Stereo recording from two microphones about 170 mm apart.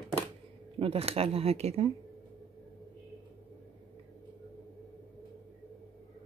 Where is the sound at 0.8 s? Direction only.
35° right (ahead or behind).